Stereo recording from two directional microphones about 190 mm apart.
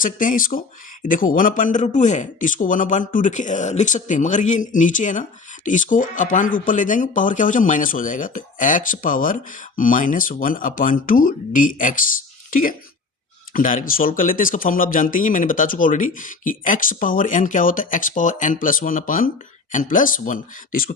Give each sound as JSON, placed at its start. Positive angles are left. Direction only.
{"t": 0.0, "sound": "speech", "side_deg": 45}